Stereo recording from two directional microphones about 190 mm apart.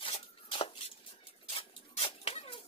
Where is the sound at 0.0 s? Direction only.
30° left (ahead or behind).